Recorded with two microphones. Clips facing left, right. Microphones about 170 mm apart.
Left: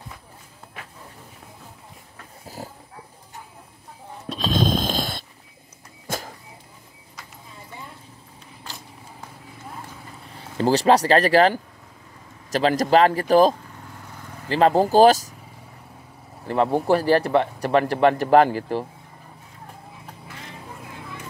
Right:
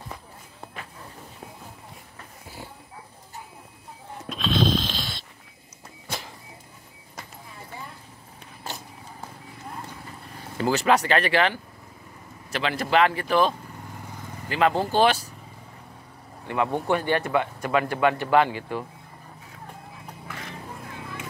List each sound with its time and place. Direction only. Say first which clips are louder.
2.4 s pig: left 5 dB; 40° left (ahead or behind)
4.3 s dog: left 1 dB; 40° left (ahead or behind)
6.0 s a sound: left 5 dB; 45° left (ahead or behind)
10.6 s a man's voice: left 4 dB; 35° left (ahead or behind)
16.4 s a man's voice: left 5 dB; 35° left (ahead or behind)